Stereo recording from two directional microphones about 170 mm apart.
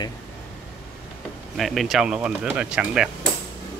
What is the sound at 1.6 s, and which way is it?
Speech, centre (ahead or behind).